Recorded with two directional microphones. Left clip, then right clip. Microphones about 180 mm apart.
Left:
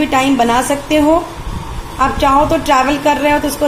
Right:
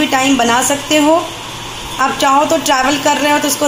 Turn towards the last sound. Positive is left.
turn(degrees=10)  # may be behind; listen again after turning